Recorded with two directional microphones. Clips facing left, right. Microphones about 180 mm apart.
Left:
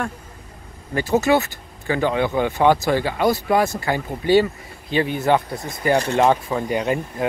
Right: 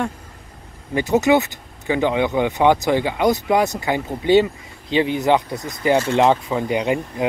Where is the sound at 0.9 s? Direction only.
20° right (ahead or behind).